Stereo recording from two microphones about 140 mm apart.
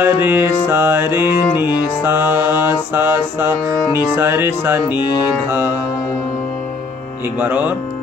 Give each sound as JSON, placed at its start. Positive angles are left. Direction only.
{"t": 0.0, "sound": "music", "side_deg": -15}
{"t": 4.8, "sound": "music", "side_deg": 30}
{"t": 5.5, "sound": "music", "side_deg": -15}
{"t": 7.3, "sound": "music", "side_deg": -10}